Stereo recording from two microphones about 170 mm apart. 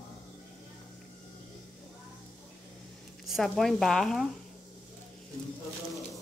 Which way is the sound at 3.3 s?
Centre (ahead or behind).